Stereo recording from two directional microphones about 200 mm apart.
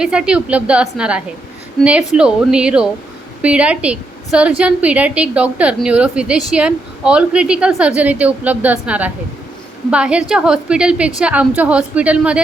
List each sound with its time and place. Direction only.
0.0 s a woman's voice: 5° right (ahead or behind)